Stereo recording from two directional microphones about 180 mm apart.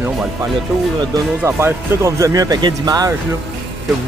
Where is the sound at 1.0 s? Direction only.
15° right (ahead or behind).